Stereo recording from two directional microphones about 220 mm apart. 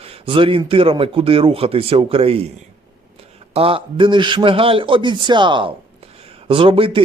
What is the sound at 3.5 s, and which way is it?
Speech, 25° right (ahead or behind).